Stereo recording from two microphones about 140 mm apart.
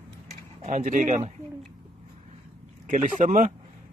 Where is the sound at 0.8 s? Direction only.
60° right (ahead or behind).